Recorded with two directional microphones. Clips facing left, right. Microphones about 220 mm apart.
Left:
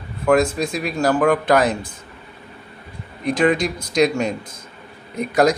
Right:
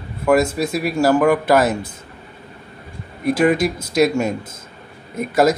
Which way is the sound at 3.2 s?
5° right (ahead or behind).